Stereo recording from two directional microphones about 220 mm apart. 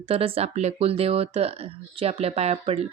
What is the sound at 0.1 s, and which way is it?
Speech, 25° right (ahead or behind).